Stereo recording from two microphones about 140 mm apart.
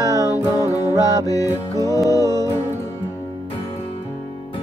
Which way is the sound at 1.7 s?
25° right (ahead or behind).